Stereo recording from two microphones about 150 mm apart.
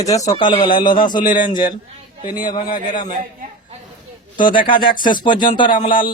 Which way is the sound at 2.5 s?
60° left (ahead or behind).